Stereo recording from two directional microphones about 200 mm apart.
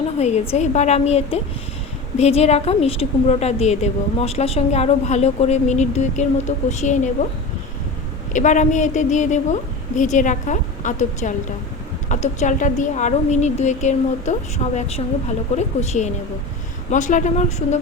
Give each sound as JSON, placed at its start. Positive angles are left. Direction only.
{"t": 0.2, "sound": "a woman's voice", "side_deg": 35}
{"t": 8.3, "sound": "a woman's voice", "side_deg": 40}